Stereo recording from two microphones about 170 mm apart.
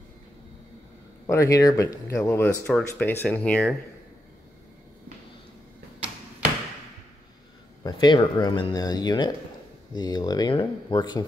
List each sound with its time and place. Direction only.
1.2 s speech: 20° left (ahead or behind)
7.8 s speech: 25° left (ahead or behind)